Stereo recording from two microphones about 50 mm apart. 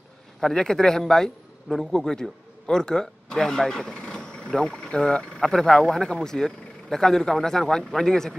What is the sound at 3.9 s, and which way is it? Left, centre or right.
Vehicle, centre.